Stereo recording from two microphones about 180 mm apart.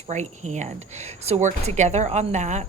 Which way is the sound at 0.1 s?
40° right (ahead or behind).